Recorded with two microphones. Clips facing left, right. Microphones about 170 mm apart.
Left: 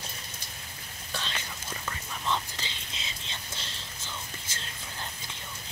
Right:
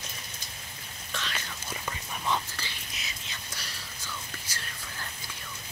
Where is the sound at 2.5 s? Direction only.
20° left (ahead or behind).